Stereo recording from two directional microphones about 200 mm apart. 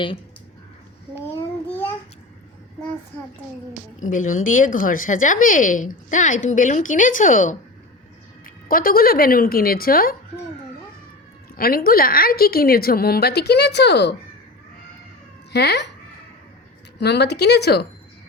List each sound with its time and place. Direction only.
4.1 s speech: 40° left (ahead or behind)
8.6 s a woman's voice: 45° left (ahead or behind)
11.5 s a woman's voice: 50° left (ahead or behind)
15.5 s speech: 55° left (ahead or behind)
17.0 s speech: 55° left (ahead or behind)